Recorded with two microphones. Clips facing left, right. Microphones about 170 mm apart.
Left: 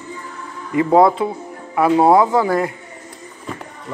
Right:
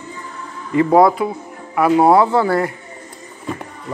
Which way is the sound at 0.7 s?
20° left (ahead or behind).